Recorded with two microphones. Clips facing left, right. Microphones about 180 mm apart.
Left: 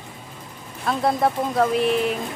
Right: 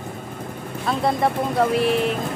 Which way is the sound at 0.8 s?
Centre (ahead or behind).